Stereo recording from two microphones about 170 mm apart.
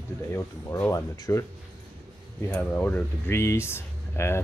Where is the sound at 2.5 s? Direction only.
10° left (ahead or behind).